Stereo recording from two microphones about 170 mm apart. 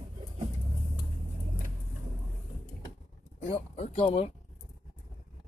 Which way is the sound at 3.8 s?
40° left (ahead or behind).